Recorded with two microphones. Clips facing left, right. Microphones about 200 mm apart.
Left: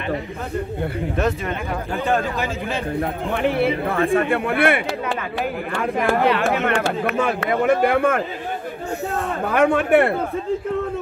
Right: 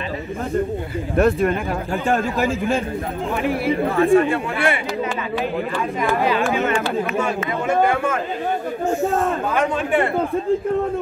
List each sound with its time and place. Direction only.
1.1 s a man's voice: 55° right (ahead or behind)
3.4 s speech: 60° left (ahead or behind)
6.2 s speech: 70° left (ahead or behind)